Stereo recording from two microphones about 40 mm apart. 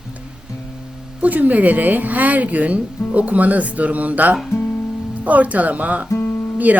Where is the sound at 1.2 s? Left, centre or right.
Right.